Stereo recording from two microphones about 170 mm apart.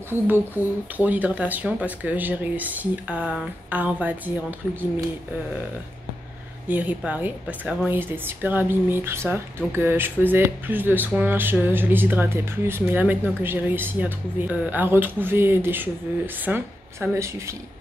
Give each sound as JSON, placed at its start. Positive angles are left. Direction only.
{"t": 0.6, "sound": "speech", "side_deg": -10}
{"t": 6.7, "sound": "speech", "side_deg": -10}